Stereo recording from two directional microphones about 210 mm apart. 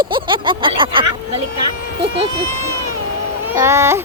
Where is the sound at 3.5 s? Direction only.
15° right (ahead or behind).